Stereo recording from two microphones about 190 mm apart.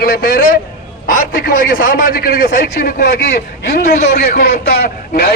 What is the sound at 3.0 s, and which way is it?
A man's voice, 60° left (ahead or behind).